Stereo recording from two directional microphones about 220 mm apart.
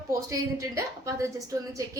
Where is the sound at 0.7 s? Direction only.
15° right (ahead or behind).